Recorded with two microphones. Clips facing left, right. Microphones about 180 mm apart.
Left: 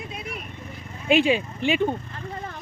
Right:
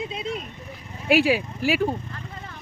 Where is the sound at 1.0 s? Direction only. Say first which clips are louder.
Even; 5° right (ahead or behind).